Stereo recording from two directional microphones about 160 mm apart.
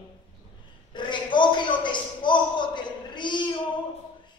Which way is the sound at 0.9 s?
30° left (ahead or behind).